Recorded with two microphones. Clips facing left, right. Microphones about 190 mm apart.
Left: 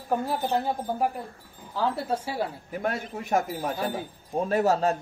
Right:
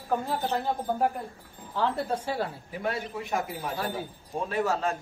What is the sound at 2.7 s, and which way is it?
A man's voice, 50° left (ahead or behind).